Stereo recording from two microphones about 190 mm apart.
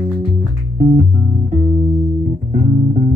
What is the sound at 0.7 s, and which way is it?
Music, 40° right (ahead or behind).